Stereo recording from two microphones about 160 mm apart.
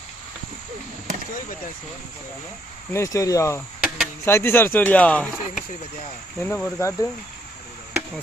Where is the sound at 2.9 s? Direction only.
20° left (ahead or behind).